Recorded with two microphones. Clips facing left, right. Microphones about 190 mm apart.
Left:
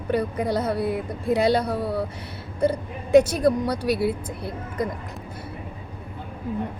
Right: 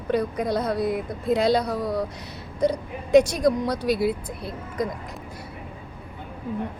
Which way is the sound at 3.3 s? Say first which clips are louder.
Left 1 dB; 5° left (ahead or behind).